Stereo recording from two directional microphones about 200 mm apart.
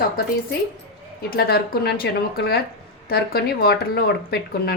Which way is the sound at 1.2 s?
50° left (ahead or behind).